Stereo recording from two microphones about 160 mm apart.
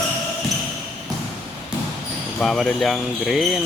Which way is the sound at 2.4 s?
Centre (ahead or behind).